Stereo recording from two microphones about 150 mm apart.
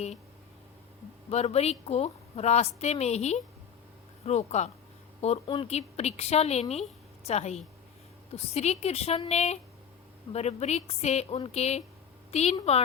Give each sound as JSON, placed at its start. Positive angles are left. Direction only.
{"t": 1.3, "sound": "a woman's voice", "side_deg": 45}